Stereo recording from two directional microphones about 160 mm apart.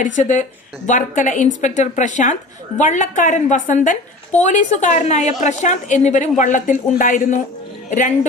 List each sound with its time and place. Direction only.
0.0 s a woman's voice: 50° left (ahead or behind)